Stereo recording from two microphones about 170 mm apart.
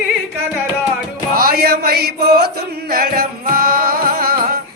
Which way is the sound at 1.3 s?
60° right (ahead or behind).